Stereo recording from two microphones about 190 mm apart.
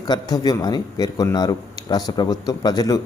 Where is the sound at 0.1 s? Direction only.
20° left (ahead or behind).